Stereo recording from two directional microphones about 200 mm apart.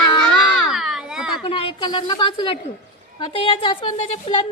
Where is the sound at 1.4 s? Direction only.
30° left (ahead or behind).